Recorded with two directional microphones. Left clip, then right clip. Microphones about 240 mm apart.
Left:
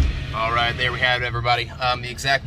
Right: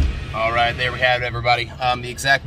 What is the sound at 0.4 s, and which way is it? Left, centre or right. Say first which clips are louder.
Speech: right 2 dB; centre.